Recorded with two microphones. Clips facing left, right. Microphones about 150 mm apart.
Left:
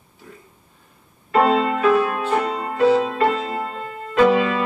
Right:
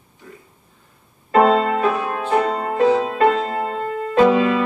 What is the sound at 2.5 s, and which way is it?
Music, 40° right (ahead or behind).